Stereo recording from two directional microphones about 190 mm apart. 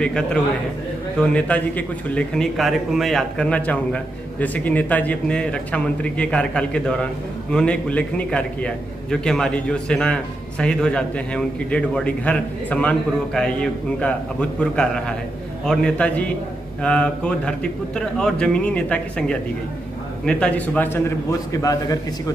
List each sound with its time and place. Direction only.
0.0 s a man's voice: 5° left (ahead or behind)